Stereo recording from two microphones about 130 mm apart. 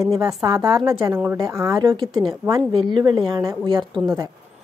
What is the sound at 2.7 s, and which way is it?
A woman's voice, 40° right (ahead or behind).